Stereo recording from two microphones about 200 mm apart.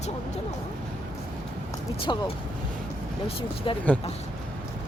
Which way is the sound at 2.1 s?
20° left (ahead or behind).